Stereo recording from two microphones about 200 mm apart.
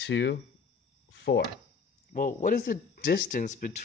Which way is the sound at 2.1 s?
40° left (ahead or behind).